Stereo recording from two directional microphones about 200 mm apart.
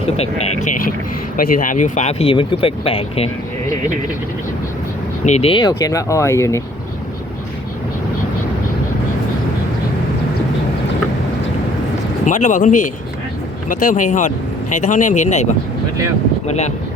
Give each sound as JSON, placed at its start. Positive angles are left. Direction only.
{"t": 0.6, "sound": "speech", "side_deg": 45}
{"t": 5.2, "sound": "speech", "side_deg": 35}
{"t": 12.2, "sound": "speech", "side_deg": 40}